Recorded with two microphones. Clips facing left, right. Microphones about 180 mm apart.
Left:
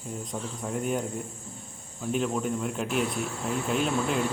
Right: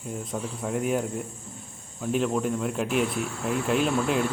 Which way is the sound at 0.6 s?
5° right (ahead or behind).